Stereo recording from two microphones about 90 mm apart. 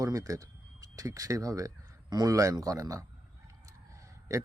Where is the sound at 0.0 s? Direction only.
40° right (ahead or behind).